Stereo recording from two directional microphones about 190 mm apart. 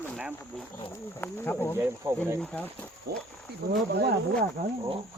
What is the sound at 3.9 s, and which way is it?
Speech, 60° right (ahead or behind).